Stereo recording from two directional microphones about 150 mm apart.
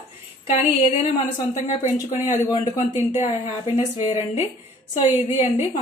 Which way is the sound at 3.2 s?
45° left (ahead or behind).